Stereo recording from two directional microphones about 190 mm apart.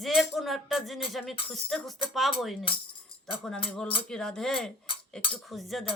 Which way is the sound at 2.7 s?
30° left (ahead or behind).